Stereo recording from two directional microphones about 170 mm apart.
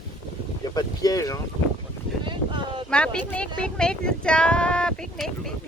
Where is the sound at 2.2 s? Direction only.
30° right (ahead or behind).